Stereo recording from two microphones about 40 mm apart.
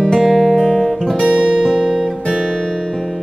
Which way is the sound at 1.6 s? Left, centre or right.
Centre.